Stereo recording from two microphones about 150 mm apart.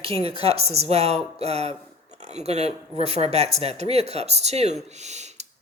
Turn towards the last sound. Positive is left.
turn(degrees=-50)  # may be behind; listen again after turning